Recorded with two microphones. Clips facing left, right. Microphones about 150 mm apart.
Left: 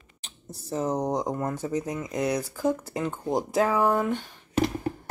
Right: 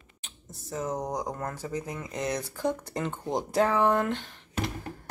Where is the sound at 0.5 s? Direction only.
35° left (ahead or behind); by 4.3 s 10° left (ahead or behind).